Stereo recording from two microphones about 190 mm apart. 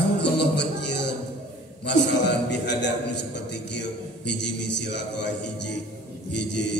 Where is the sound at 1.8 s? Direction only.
65° left (ahead or behind).